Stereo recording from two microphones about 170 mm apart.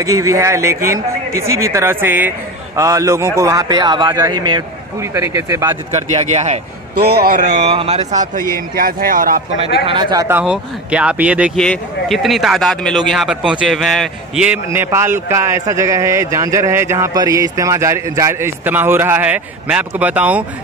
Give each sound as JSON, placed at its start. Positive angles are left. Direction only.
{"t": 0.0, "sound": "speech", "side_deg": -20}
{"t": 6.1, "sound": "speech", "side_deg": -40}
{"t": 7.0, "sound": "a man's voice", "side_deg": -70}
{"t": 7.6, "sound": "speech", "side_deg": -35}
{"t": 8.7, "sound": "speech", "side_deg": -60}
{"t": 9.6, "sound": "speech", "side_deg": -30}
{"t": 10.2, "sound": "speech", "side_deg": -10}
{"t": 11.5, "sound": "speech", "side_deg": 5}